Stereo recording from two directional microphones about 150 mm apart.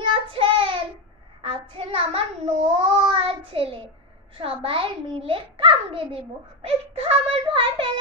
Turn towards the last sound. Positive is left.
turn(degrees=-35)  # may be behind; listen again after turning